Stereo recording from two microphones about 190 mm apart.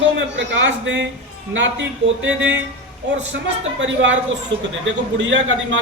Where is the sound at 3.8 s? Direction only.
75° right (ahead or behind).